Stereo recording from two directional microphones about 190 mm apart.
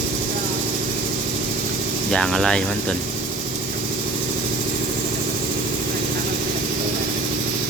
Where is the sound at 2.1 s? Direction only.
Centre (ahead or behind).